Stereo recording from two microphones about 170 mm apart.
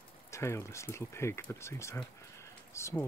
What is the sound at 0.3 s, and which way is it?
Speech, 15° left (ahead or behind).